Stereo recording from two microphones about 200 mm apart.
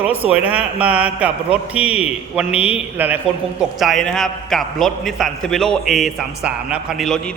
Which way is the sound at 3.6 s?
Centre (ahead or behind).